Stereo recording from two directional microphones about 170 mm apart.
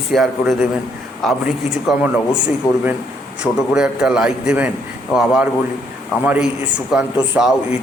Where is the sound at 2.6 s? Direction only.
20° left (ahead or behind).